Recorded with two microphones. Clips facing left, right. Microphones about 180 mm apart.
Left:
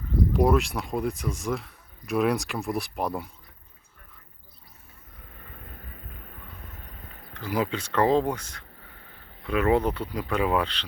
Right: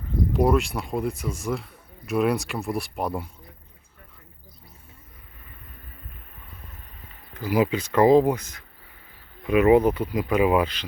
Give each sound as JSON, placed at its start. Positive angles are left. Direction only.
{"t": 0.3, "sound": "speech", "side_deg": 0}
{"t": 7.3, "sound": "speech", "side_deg": -10}